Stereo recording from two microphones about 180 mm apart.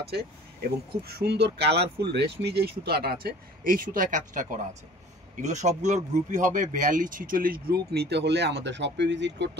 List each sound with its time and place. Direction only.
0.0 s speech: 60° right (ahead or behind)